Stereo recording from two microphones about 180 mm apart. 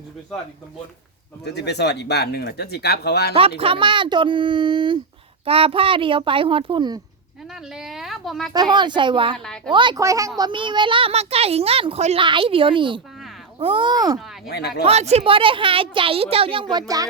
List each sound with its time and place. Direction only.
1.5 s speech: 65° left (ahead or behind)
3.6 s a child's voice: 30° right (ahead or behind)
7.5 s a woman's voice: centre (ahead or behind)
8.5 s a child's voice: 25° right (ahead or behind)
14.4 s speech: 65° left (ahead or behind)
14.8 s a child's voice: 35° right (ahead or behind)